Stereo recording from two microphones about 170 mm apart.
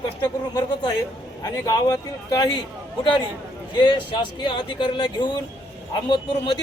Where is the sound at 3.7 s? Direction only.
30° left (ahead or behind).